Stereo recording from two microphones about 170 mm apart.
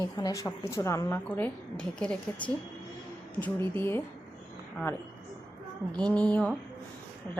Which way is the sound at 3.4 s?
15° left (ahead or behind).